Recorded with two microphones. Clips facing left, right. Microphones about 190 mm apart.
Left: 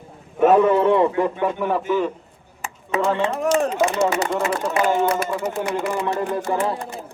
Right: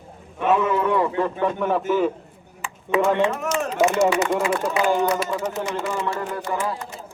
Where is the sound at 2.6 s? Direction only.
40° left (ahead or behind).